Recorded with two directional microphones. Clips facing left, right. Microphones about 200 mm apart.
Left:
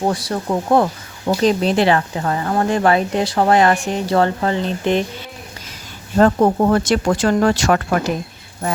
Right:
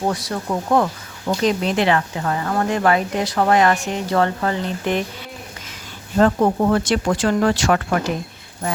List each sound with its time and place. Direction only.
0.1 s speech: 30° left (ahead or behind)
6.1 s speech: 40° left (ahead or behind)